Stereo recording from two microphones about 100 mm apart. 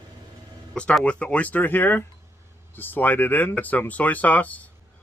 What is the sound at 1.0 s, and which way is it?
Speech, 10° left (ahead or behind).